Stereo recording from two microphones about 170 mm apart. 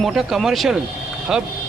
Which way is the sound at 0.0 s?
Centre (ahead or behind).